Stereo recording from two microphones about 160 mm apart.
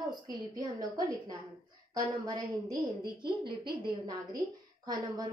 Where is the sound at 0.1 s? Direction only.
25° right (ahead or behind).